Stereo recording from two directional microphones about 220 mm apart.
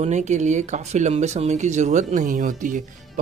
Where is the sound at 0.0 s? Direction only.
30° right (ahead or behind).